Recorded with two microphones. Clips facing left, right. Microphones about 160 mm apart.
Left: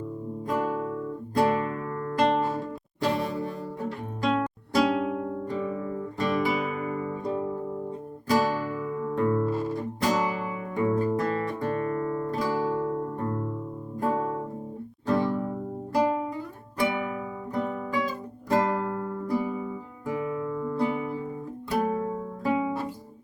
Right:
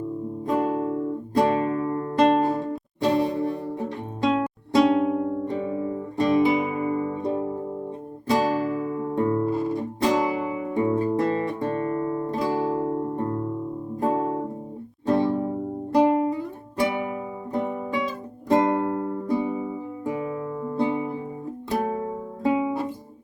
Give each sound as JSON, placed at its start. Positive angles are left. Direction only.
{"t": 0.4, "sound": "music", "side_deg": -25}
{"t": 10.0, "sound": "guitar", "side_deg": -25}
{"t": 14.0, "sound": "music", "side_deg": -25}
{"t": 16.8, "sound": "music", "side_deg": -20}